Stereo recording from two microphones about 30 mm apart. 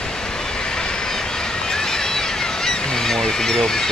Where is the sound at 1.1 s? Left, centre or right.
Centre.